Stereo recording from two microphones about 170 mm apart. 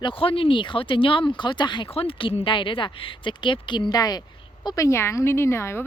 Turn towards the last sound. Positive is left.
turn(degrees=15)  # may be behind; listen again after turning